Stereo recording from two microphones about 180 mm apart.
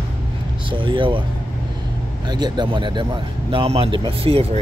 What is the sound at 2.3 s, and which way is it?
Speech, 25° right (ahead or behind).